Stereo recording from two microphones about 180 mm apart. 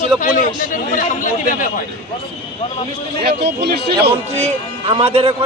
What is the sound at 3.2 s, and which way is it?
Speech, 65° right (ahead or behind).